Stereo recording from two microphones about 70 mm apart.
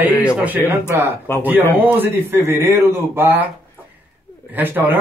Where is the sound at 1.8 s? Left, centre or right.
Right.